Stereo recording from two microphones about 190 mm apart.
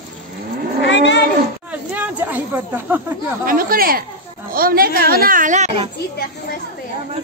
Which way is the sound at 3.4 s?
50° right (ahead or behind).